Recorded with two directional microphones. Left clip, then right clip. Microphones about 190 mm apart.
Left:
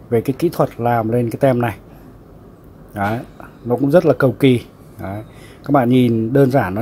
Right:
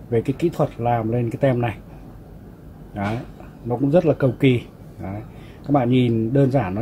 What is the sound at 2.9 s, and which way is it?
Speech, 30° left (ahead or behind).